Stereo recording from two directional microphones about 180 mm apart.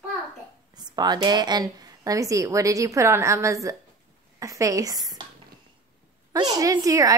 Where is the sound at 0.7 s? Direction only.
25° right (ahead or behind).